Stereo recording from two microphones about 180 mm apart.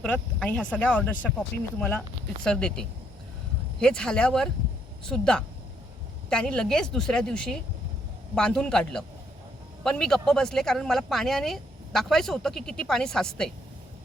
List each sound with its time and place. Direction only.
0.0 s speech: 5° left (ahead or behind)